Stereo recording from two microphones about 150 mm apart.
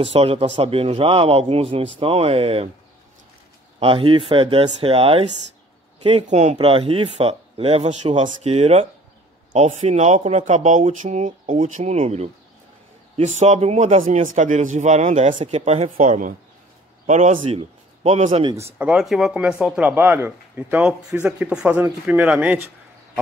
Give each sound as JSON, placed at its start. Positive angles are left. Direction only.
{"t": 0.0, "sound": "speech", "side_deg": -40}
{"t": 3.8, "sound": "speech", "side_deg": -35}
{"t": 6.2, "sound": "speech", "side_deg": -50}
{"t": 13.4, "sound": "speech", "side_deg": -50}
{"t": 18.5, "sound": "speech", "side_deg": -15}